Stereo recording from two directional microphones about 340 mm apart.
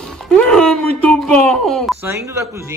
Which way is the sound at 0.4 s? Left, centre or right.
Centre.